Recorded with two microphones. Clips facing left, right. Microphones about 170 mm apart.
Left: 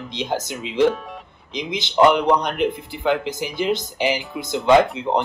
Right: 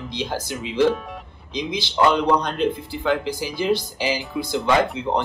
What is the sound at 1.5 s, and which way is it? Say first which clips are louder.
Speech: left 2 dB; 20° left (ahead or behind).